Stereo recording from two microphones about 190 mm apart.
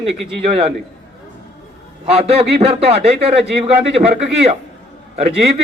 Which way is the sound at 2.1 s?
30° right (ahead or behind).